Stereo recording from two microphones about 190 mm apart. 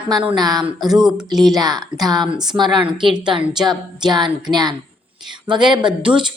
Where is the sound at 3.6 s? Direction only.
20° right (ahead or behind).